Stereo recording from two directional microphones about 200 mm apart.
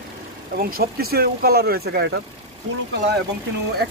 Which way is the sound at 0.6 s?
45° right (ahead or behind).